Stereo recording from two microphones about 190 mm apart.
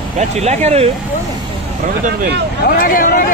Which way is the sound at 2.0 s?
50° right (ahead or behind).